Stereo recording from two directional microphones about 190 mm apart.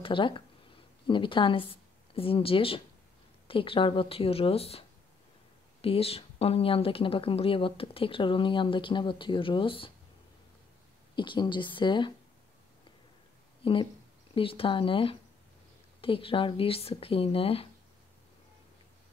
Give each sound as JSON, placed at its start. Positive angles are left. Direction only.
{"t": 0.0, "sound": "a woman's voice", "side_deg": 25}
{"t": 11.1, "sound": "a woman's voice", "side_deg": 25}
{"t": 13.6, "sound": "a woman's voice", "side_deg": 25}